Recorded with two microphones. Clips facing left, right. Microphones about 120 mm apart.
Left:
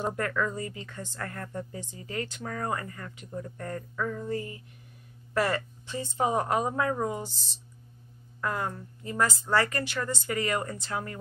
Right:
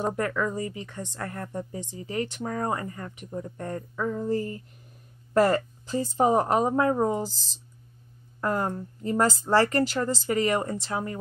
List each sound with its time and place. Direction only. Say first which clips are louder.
0.1 s a woman's voice: right 2 dB; 15° right (ahead or behind)
4.2 s speech: right 5 dB; 35° right (ahead or behind)
8.4 s speech: right 5 dB; 35° right (ahead or behind)